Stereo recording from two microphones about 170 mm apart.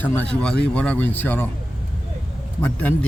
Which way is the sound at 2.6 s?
10° left (ahead or behind).